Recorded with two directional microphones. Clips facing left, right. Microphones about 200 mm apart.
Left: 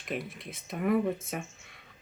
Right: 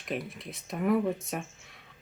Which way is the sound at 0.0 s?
Centre (ahead or behind).